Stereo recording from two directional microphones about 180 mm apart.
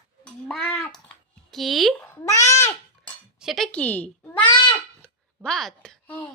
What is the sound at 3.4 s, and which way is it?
A child's voice, centre (ahead or behind).